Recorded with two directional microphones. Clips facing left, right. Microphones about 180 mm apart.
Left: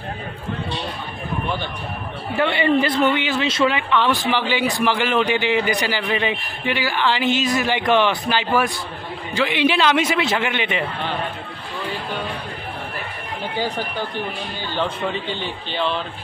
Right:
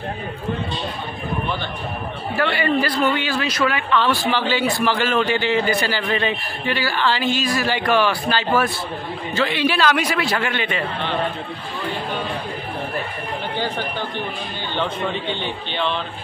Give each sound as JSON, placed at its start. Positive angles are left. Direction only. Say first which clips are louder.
{"t": 2.3, "sound": "a man's voice", "louder": "left 2 dB", "side_deg": 20}
{"t": 13.6, "sound": "a man's voice", "louder": "left 2 dB", "side_deg": 10}